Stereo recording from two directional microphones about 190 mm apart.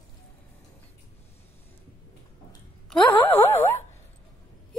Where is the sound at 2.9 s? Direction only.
10° left (ahead or behind).